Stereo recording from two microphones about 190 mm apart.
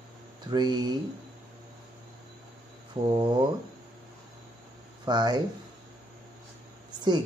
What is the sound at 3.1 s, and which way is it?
Speech, 25° right (ahead or behind).